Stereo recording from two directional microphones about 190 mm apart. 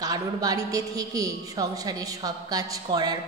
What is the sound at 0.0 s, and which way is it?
A woman's voice, 20° right (ahead or behind).